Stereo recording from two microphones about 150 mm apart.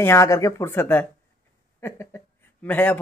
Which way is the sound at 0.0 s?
20° left (ahead or behind).